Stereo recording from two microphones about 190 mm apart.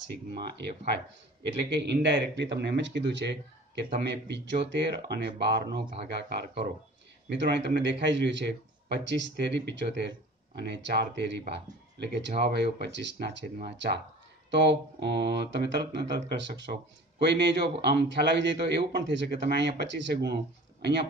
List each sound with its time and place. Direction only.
1.7 s speech: 60° right (ahead or behind)